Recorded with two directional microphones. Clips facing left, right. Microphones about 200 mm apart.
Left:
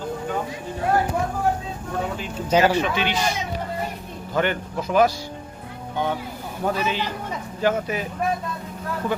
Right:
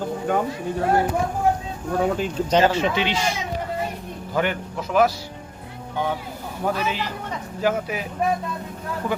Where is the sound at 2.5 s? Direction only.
10° left (ahead or behind).